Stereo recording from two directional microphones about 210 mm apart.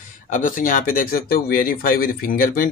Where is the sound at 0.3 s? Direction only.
40° left (ahead or behind).